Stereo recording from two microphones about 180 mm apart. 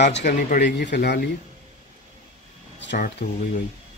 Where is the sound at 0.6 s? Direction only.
75° left (ahead or behind).